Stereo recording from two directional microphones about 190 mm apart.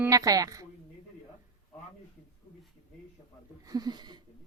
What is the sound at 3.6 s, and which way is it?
Speech, 20° right (ahead or behind).